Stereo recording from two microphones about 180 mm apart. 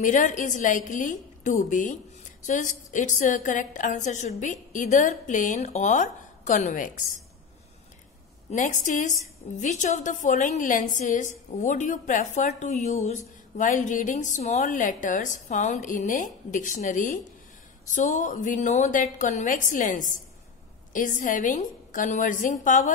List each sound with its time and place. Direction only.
0.0 s a woman's voice: 45° left (ahead or behind)
8.5 s a woman's voice: 45° left (ahead or behind)